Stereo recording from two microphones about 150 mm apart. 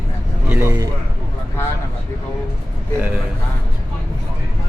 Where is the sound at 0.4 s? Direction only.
15° right (ahead or behind).